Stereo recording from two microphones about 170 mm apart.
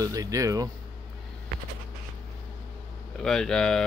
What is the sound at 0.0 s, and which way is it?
Speech, 20° right (ahead or behind).